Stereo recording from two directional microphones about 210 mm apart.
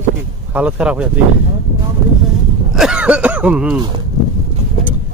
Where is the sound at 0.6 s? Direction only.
5° right (ahead or behind).